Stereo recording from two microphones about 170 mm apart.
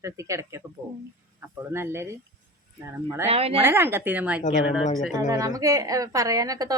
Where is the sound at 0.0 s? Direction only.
15° right (ahead or behind).